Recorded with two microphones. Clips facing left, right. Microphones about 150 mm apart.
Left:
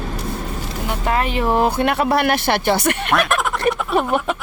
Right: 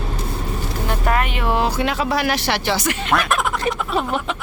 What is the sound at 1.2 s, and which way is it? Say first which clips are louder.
Speech: left 3 dB; 40° left (ahead or behind).